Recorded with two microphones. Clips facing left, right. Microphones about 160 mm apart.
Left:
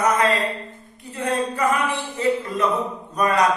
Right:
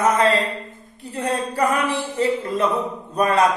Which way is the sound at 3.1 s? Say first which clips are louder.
Right 2 dB; 30° right (ahead or behind).